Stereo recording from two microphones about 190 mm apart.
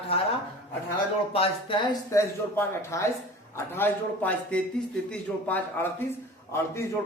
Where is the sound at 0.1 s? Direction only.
30° left (ahead or behind).